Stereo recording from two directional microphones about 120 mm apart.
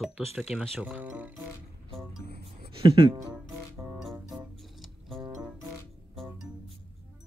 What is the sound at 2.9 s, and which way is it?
Speech, 45° right (ahead or behind).